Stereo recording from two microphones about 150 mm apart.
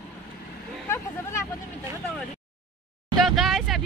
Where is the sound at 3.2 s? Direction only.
Centre (ahead or behind).